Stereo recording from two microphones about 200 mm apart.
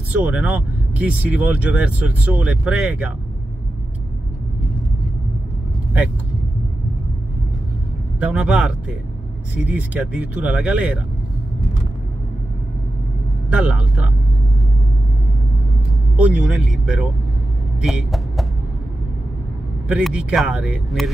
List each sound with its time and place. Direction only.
0.1 s speech: 5° right (ahead or behind)
8.2 s speech: 5° right (ahead or behind)
13.5 s speech: 5° right (ahead or behind)
16.2 s speech: 5° right (ahead or behind)
19.9 s speech: 5° right (ahead or behind)